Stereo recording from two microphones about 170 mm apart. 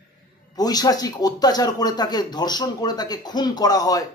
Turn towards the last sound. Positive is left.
turn(degrees=20)  # may be behind; listen again after turning